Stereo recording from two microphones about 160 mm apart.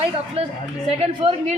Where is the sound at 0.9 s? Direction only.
40° right (ahead or behind).